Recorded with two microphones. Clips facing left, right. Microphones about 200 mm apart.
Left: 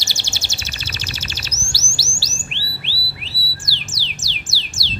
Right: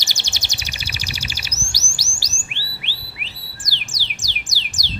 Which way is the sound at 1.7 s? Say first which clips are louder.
Left 4 dB; 15° right (ahead or behind).